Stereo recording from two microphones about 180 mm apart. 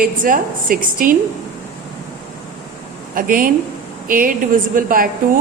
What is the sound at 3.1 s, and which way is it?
Speech, 50° right (ahead or behind).